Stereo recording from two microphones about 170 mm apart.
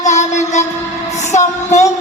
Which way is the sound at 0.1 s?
45° left (ahead or behind).